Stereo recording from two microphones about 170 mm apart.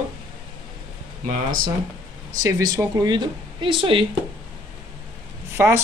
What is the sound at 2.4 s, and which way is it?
Speech, 20° right (ahead or behind).